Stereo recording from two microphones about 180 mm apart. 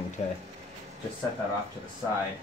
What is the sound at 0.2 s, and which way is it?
Speech, 40° left (ahead or behind).